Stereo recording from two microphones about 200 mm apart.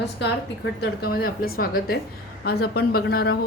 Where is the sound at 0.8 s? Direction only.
50° left (ahead or behind).